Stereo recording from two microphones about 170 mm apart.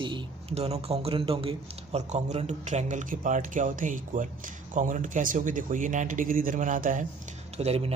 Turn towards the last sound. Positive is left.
turn(degrees=-35)  # may be behind; listen again after turning